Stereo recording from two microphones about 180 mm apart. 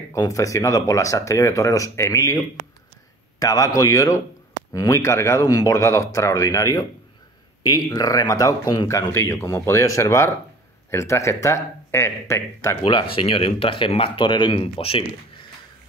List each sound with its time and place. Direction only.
0.1 s speech: 20° left (ahead or behind)
12.8 s speech: 30° left (ahead or behind)